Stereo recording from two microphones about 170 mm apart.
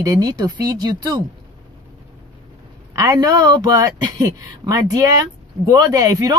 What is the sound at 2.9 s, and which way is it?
Speech, 20° right (ahead or behind).